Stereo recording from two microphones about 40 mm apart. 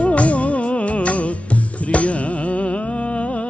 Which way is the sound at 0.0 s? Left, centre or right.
Left.